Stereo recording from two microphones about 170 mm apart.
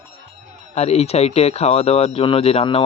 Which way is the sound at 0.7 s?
40° left (ahead or behind).